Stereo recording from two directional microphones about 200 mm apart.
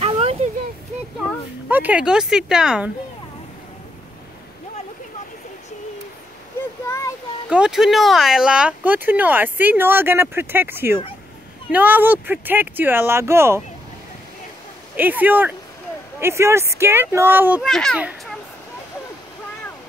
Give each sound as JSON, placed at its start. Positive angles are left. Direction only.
{"t": 0.0, "sound": "a sound", "side_deg": -30}
{"t": 1.7, "sound": "speech", "side_deg": -10}
{"t": 7.4, "sound": "speech", "side_deg": -5}
{"t": 15.0, "sound": "speech", "side_deg": -10}